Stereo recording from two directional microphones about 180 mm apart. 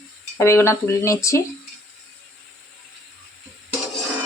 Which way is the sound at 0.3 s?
15° left (ahead or behind).